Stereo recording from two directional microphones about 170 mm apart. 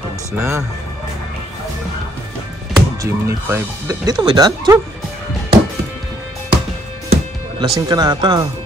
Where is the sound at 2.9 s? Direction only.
15° right (ahead or behind).